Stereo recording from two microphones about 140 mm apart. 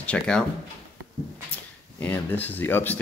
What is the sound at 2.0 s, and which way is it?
Speech, 15° left (ahead or behind).